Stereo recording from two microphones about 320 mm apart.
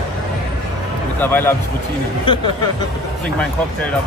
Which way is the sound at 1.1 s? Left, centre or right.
Centre.